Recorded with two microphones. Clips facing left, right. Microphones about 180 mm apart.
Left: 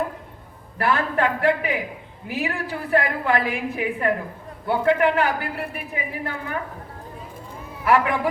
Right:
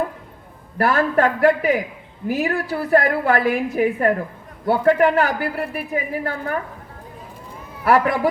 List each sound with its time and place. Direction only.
0.8 s a man's voice: 40° right (ahead or behind)
7.9 s a woman's voice: 40° right (ahead or behind)